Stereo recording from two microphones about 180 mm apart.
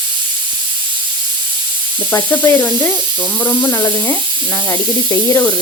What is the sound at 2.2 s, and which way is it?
A woman's voice, 10° left (ahead or behind).